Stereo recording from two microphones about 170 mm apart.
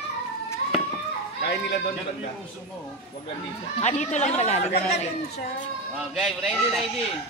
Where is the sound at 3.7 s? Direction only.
40° left (ahead or behind).